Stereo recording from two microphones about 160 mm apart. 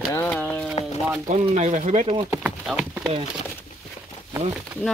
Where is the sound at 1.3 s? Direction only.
45° right (ahead or behind).